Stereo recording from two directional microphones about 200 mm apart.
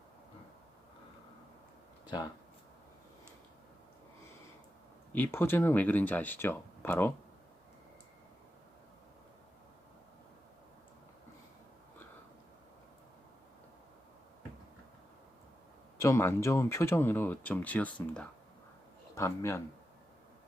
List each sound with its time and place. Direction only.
2.0 s speech: 20° left (ahead or behind)
5.1 s speech: 10° left (ahead or behind)
16.0 s speech: 15° left (ahead or behind)